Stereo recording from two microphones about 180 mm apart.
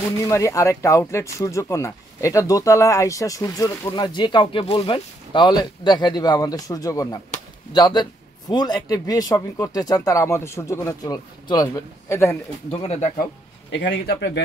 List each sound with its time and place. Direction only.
0.2 s speech: 15° left (ahead or behind)
12.7 s speech: 35° left (ahead or behind)
13.7 s a man's voice: 90° left; by 14.4 s 70° left (ahead or behind)